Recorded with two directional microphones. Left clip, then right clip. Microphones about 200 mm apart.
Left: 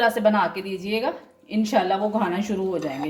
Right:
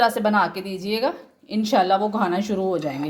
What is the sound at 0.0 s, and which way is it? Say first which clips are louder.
A woman's voice: right 1 dB; 30° right (ahead or behind).